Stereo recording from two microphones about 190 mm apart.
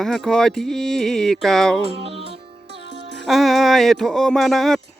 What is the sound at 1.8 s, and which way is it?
Music, 30° right (ahead or behind).